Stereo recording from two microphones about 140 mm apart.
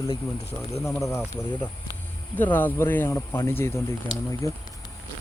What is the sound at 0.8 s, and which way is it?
Speech, 20° left (ahead or behind).